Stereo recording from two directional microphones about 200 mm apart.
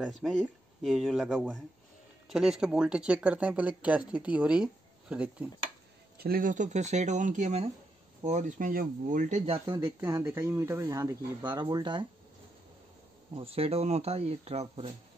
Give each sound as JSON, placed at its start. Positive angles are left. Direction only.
{"t": 0.0, "sound": "speech", "side_deg": 0}
{"t": 6.1, "sound": "speech", "side_deg": -45}
{"t": 9.7, "sound": "speech", "side_deg": -20}
{"t": 13.3, "sound": "speech", "side_deg": -30}